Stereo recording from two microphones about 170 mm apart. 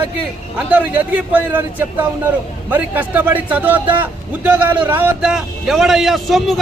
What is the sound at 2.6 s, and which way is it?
A man's voice, 10° right (ahead or behind).